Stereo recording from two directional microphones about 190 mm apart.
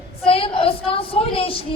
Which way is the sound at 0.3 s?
30° left (ahead or behind).